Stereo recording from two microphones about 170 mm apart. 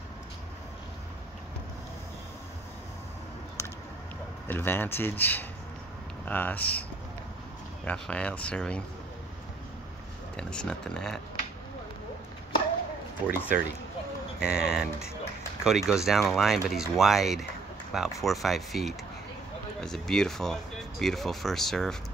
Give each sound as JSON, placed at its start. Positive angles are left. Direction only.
{"t": 3.6, "sound": "a sound", "side_deg": 15}
{"t": 4.5, "sound": "speech", "side_deg": 15}
{"t": 7.8, "sound": "speech", "side_deg": 5}
{"t": 10.3, "sound": "speech", "side_deg": 5}
{"t": 14.4, "sound": "speech", "side_deg": -5}